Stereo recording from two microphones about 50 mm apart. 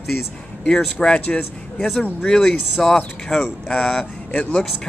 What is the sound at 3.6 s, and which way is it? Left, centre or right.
Speech, centre.